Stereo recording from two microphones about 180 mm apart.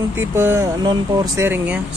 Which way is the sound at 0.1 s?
15° right (ahead or behind).